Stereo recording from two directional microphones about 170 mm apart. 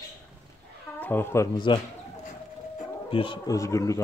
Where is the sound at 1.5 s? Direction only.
25° left (ahead or behind).